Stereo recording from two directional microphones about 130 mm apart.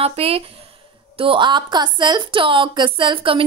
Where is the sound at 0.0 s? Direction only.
50° right (ahead or behind).